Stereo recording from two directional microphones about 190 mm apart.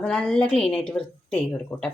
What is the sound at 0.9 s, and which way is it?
Speech, 5° left (ahead or behind).